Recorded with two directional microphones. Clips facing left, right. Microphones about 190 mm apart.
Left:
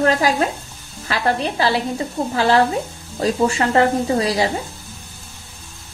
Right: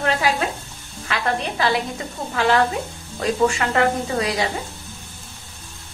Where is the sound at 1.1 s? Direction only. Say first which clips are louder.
Left 3 dB; 30° left (ahead or behind).